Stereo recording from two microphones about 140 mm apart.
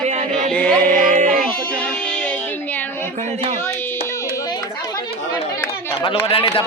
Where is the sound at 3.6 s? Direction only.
15° left (ahead or behind).